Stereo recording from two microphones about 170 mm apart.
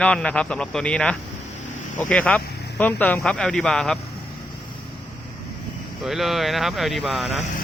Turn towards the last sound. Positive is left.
turn(degrees=0)  # may be behind; listen again after turning